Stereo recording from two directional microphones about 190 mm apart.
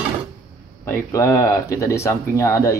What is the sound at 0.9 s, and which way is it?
Speech, 15° left (ahead or behind).